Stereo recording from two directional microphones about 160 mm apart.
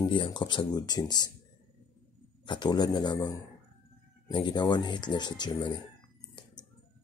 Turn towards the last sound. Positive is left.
turn(degrees=25)  # may be behind; listen again after turning